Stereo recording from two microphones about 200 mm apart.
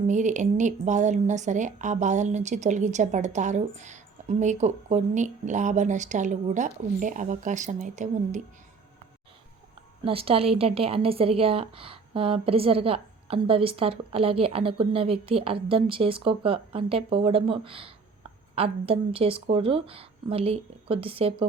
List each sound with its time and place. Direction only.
0.1 s speech: 40° right (ahead or behind)
10.0 s a woman's voice: 30° right (ahead or behind)